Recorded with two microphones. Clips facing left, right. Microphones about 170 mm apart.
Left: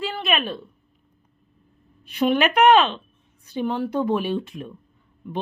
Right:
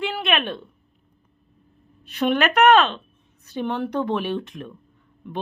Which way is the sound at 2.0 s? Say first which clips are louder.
Left 1 dB; 10° left (ahead or behind).